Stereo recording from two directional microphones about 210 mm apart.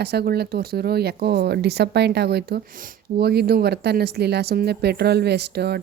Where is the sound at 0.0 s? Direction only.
50° right (ahead or behind).